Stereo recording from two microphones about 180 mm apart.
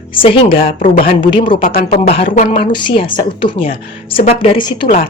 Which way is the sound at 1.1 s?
30° left (ahead or behind).